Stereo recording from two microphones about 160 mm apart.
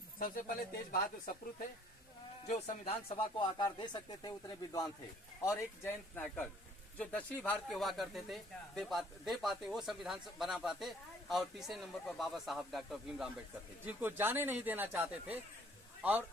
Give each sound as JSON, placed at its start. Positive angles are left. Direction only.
{"t": 0.2, "sound": "speech", "side_deg": 60}
{"t": 2.5, "sound": "speech", "side_deg": 45}
{"t": 13.8, "sound": "speech", "side_deg": -15}